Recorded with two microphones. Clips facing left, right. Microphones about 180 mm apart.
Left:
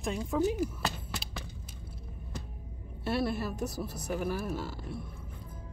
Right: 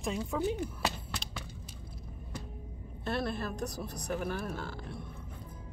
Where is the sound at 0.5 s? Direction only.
5° left (ahead or behind).